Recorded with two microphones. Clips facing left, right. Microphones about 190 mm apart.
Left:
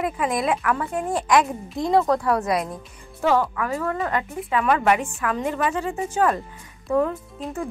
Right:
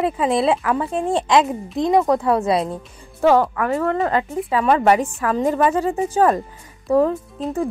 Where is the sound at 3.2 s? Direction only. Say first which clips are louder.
Right 5 dB; 50° right (ahead or behind).